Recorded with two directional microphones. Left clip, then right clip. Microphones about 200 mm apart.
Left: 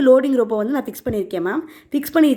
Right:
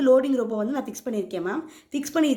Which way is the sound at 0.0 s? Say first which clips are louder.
Left 6 dB; 50° left (ahead or behind).